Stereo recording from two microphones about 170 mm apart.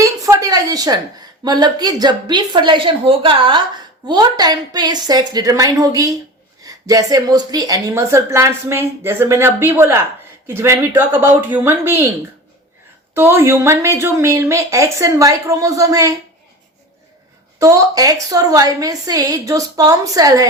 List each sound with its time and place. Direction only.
0.0 s a sound: 20° right (ahead or behind)
1.5 s a woman's voice: 25° right (ahead or behind)
13.1 s a woman's voice: 15° right (ahead or behind)
17.6 s a woman's voice: 20° right (ahead or behind)